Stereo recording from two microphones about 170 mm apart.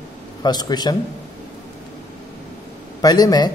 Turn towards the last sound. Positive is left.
turn(degrees=25)  # may be behind; listen again after turning